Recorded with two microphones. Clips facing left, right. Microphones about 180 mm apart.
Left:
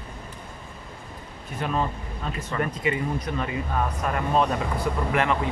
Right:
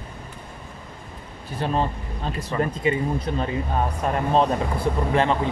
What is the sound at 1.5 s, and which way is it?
Speech, 30° right (ahead or behind).